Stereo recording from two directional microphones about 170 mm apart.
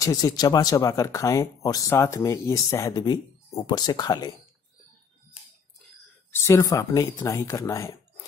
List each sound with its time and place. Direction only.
0.0 s speech: 20° left (ahead or behind)
6.3 s speech: 15° left (ahead or behind)